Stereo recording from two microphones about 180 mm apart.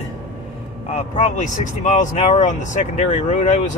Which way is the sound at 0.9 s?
40° left (ahead or behind).